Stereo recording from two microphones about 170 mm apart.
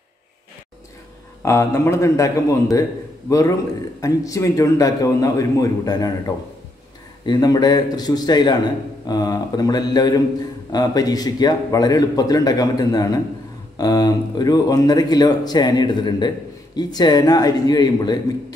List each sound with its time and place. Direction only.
1.4 s a man's voice: 15° left (ahead or behind)